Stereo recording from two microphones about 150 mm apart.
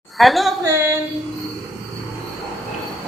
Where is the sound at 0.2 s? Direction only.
Centre (ahead or behind).